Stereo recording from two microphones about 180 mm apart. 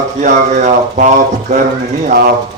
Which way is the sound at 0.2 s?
40° right (ahead or behind).